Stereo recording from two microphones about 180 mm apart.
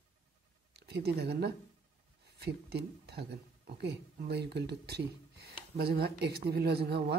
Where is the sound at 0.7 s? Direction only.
65° right (ahead or behind).